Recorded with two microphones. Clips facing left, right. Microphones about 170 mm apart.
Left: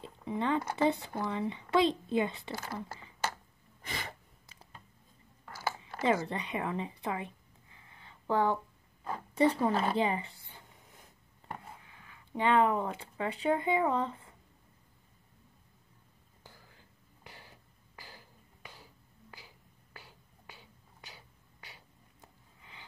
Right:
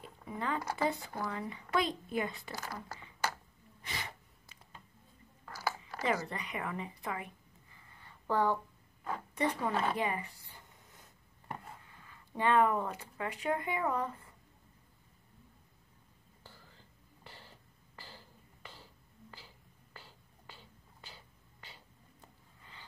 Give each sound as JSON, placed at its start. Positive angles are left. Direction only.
{"t": 0.0, "sound": "speech", "side_deg": 25}
{"t": 3.8, "sound": "gasp", "side_deg": 50}
{"t": 5.5, "sound": "speech", "side_deg": 25}
{"t": 7.9, "sound": "a sound", "side_deg": 15}
{"t": 9.3, "sound": "speech", "side_deg": 30}
{"t": 16.4, "sound": "throat clearing", "side_deg": 15}
{"t": 19.3, "sound": "a sound", "side_deg": 10}